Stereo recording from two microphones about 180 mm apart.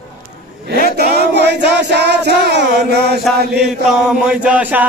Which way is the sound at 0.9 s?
65° right (ahead or behind).